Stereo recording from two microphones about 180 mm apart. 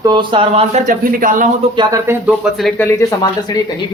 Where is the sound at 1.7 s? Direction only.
25° right (ahead or behind).